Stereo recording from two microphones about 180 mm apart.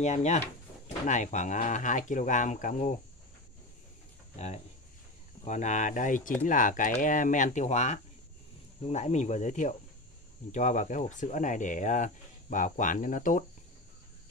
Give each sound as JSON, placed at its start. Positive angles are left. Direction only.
{"t": 0.0, "sound": "speech", "side_deg": 40}
{"t": 5.4, "sound": "speech", "side_deg": 40}